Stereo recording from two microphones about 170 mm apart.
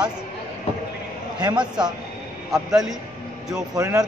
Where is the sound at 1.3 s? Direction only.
25° right (ahead or behind).